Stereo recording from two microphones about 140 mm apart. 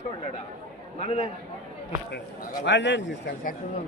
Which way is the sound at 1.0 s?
40° left (ahead or behind).